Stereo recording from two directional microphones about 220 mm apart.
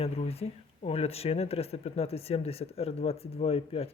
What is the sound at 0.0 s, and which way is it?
Speech, 25° left (ahead or behind).